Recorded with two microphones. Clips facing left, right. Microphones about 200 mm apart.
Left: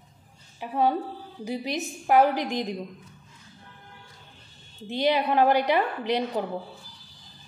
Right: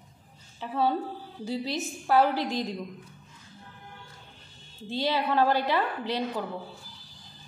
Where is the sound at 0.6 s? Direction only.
15° left (ahead or behind).